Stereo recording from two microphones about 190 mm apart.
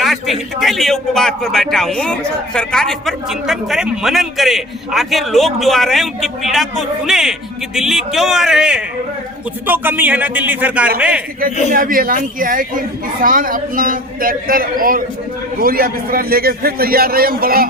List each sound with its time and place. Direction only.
0.0 s a man's voice: centre (ahead or behind)
11.7 s a man's voice: 50° right (ahead or behind)